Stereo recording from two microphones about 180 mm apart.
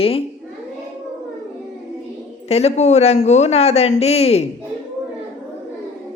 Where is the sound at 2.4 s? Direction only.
35° left (ahead or behind).